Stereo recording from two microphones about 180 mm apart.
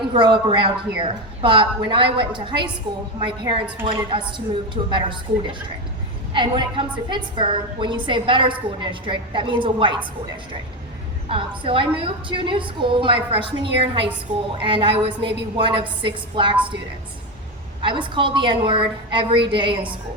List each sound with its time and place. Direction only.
0.0 s a woman's voice: 25° right (ahead or behind)
11.3 s a woman's voice: 30° right (ahead or behind)
17.8 s a woman's voice: 25° right (ahead or behind)